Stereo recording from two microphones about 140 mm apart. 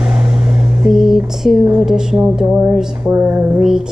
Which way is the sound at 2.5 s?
15° right (ahead or behind).